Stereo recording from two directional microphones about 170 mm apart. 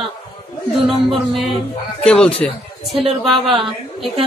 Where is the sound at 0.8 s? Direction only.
Centre (ahead or behind).